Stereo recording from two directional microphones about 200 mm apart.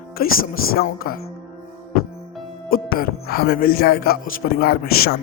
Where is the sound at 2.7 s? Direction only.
50° left (ahead or behind).